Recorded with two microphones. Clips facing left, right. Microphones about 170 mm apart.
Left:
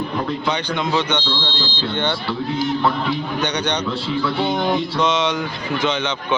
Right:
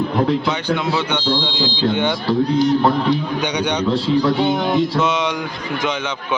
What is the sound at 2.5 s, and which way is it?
Speech, 5° left (ahead or behind).